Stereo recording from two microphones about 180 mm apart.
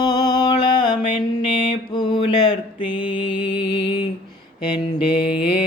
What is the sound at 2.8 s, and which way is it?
Music, 30° left (ahead or behind).